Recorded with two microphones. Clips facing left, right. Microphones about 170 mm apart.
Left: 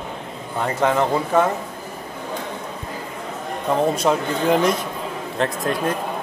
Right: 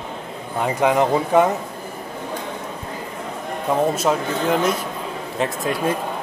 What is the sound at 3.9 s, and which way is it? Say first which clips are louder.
A man's voice: left 1 dB; centre (ahead or behind).